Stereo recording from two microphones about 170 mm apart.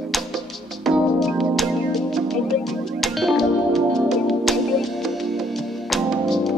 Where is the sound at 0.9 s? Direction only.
Centre (ahead or behind).